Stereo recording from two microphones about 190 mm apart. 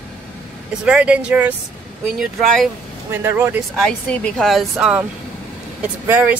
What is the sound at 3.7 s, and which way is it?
Speech, 5° left (ahead or behind).